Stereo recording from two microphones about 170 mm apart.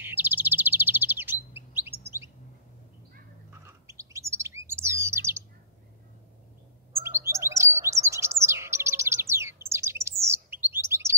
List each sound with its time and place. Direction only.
0.0 s bird: 10° right (ahead or behind)
1.9 s chirp: 15° right (ahead or behind)
3.6 s bird: 15° right (ahead or behind)
7.0 s chirp: 15° right (ahead or behind)